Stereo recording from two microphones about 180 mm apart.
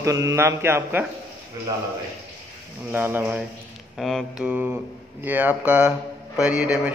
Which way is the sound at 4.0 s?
Centre (ahead or behind).